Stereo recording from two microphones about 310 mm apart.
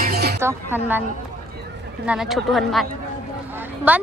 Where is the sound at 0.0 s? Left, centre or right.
Right.